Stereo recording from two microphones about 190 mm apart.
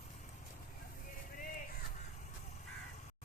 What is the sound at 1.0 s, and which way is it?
Crow, 45° left (ahead or behind).